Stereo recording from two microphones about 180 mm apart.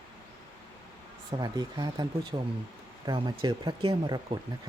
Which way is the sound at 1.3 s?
20° right (ahead or behind).